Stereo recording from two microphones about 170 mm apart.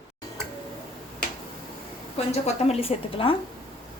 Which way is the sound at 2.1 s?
40° left (ahead or behind).